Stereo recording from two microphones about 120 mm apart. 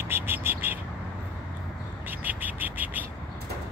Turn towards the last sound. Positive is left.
turn(degrees=-15)  # may be behind; listen again after turning